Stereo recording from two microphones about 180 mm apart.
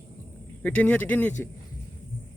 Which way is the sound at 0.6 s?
10° left (ahead or behind).